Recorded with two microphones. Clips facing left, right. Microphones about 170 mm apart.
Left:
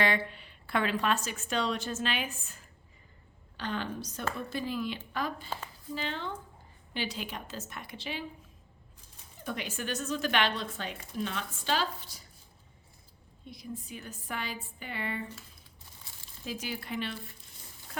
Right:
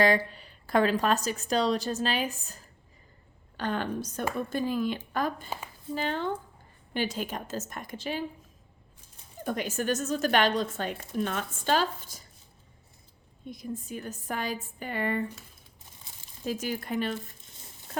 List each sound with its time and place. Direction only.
0.0 s speech: 40° right (ahead or behind)
3.6 s a woman's voice: 50° right (ahead or behind)
9.4 s a woman's voice: 45° right (ahead or behind)
13.4 s a woman's voice: 50° right (ahead or behind)
16.1 s crumpling: 20° right (ahead or behind)
16.4 s a woman's voice: 45° right (ahead or behind)